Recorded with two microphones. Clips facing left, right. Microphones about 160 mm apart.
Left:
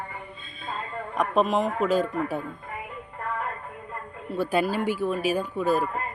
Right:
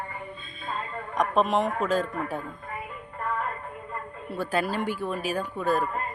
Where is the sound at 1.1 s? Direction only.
Centre (ahead or behind).